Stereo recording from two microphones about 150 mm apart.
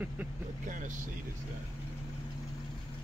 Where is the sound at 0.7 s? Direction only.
60° right (ahead or behind).